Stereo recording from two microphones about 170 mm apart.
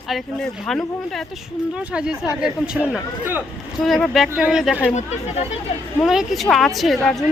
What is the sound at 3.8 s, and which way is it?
Speech, centre (ahead or behind).